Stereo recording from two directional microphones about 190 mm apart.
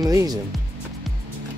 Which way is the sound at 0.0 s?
20° right (ahead or behind).